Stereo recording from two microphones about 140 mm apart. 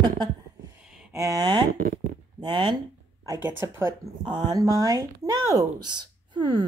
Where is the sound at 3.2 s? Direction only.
20° right (ahead or behind).